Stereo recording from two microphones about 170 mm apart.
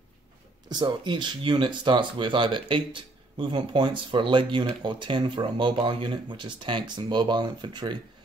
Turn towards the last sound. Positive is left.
turn(degrees=-25)  # may be behind; listen again after turning